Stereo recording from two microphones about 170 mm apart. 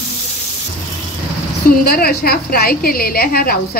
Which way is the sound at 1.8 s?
60° left (ahead or behind).